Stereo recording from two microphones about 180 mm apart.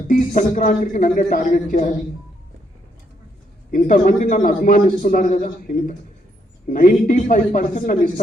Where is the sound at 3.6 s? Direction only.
50° left (ahead or behind).